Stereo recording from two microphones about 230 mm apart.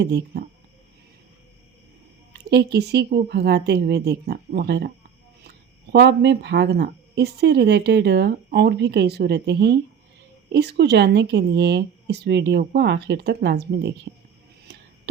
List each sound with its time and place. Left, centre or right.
0.0 s speech: right
2.3 s speech: right